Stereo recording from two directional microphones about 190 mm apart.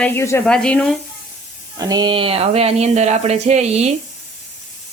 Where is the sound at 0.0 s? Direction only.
15° left (ahead or behind).